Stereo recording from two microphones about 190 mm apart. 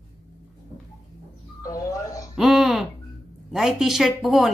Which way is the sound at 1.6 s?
20° left (ahead or behind).